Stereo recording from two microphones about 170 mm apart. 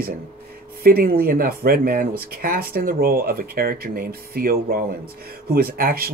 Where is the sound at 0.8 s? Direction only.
60° right (ahead or behind).